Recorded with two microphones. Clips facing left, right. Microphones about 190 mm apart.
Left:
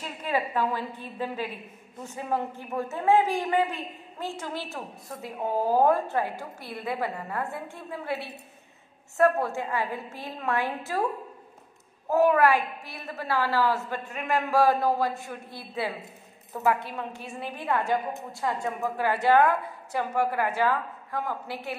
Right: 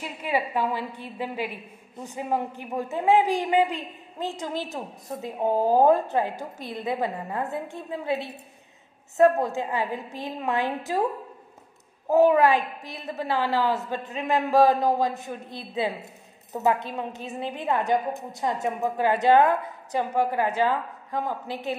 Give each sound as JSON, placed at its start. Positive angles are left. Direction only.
{"t": 0.0, "sound": "a woman's voice", "side_deg": -10}
{"t": 12.1, "sound": "a woman's voice", "side_deg": -20}